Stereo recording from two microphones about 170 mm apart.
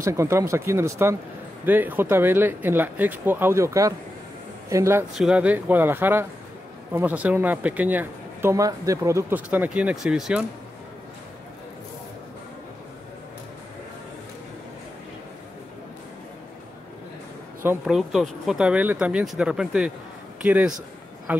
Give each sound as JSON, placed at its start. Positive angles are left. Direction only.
{"t": 0.0, "sound": "speech", "side_deg": -15}
{"t": 5.1, "sound": "speech", "side_deg": -5}
{"t": 17.6, "sound": "a man's voice", "side_deg": -5}